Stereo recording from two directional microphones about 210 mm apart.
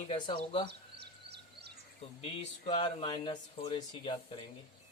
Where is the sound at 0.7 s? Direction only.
50° right (ahead or behind).